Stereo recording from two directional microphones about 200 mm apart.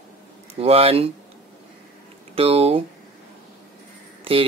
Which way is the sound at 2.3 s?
30° right (ahead or behind).